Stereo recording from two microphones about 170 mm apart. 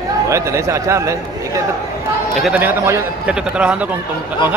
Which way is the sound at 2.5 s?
15° right (ahead or behind).